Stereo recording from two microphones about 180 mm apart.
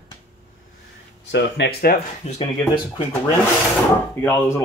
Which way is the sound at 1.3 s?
75° left (ahead or behind).